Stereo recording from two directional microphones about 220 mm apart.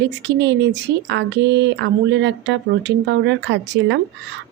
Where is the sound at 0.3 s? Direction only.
55° right (ahead or behind).